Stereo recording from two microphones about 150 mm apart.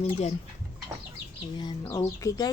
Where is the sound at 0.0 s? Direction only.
45° left (ahead or behind).